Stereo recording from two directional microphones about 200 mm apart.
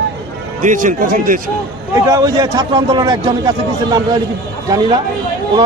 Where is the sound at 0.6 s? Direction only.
40° right (ahead or behind).